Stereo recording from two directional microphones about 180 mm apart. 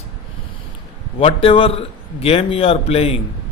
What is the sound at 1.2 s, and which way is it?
A man's voice, 30° left (ahead or behind).